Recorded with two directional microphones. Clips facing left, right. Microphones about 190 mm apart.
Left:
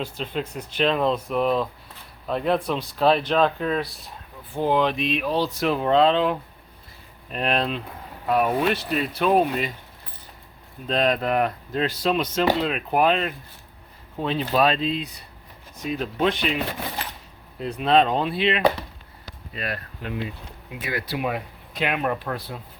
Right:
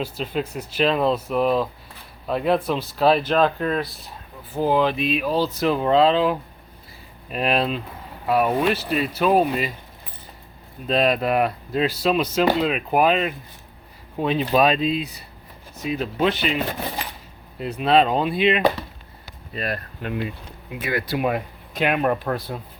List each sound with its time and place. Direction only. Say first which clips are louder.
0.0 s speech: right 3 dB; 5° right (ahead or behind)
10.8 s speech: right 2 dB; 5° right (ahead or behind)
17.6 s speech: right 1 dB; 5° right (ahead or behind)
19.5 s speech: right 4 dB; 40° right (ahead or behind)